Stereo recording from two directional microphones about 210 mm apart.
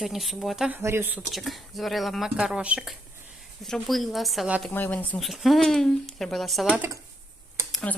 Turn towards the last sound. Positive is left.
turn(degrees=5)  # may be behind; listen again after turning